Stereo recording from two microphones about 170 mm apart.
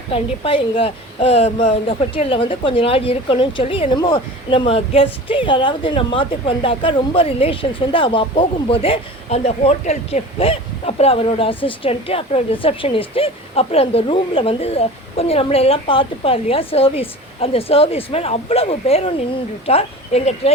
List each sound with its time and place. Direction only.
0.1 s a woman's voice: 30° left (ahead or behind)